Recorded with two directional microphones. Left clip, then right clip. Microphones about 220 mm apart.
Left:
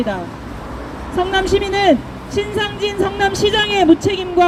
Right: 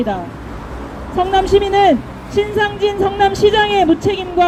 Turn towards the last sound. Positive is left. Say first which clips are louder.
# even
turn(degrees=15)  # may be behind; listen again after turning